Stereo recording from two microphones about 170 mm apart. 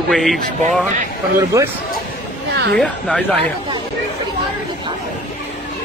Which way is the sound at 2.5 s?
90° right.